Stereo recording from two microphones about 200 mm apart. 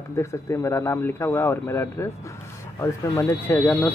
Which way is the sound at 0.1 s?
15° left (ahead or behind).